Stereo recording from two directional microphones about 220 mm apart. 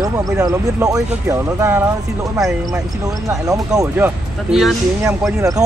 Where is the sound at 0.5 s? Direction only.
15° right (ahead or behind).